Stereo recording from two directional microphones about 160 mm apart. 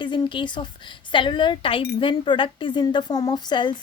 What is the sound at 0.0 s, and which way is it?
Speech, 30° left (ahead or behind).